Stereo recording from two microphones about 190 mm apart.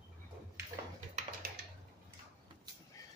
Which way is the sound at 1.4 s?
50° right (ahead or behind).